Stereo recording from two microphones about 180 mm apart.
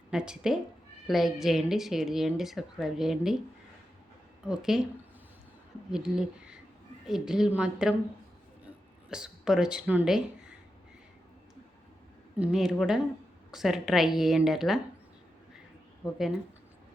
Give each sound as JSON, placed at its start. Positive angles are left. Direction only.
{"t": 0.1, "sound": "a woman's voice", "side_deg": -5}
{"t": 4.4, "sound": "a woman's voice", "side_deg": -5}
{"t": 5.9, "sound": "a woman's voice", "side_deg": -5}
{"t": 8.6, "sound": "a sound", "side_deg": -5}
{"t": 12.4, "sound": "a woman's voice", "side_deg": -5}
{"t": 16.0, "sound": "speech", "side_deg": 20}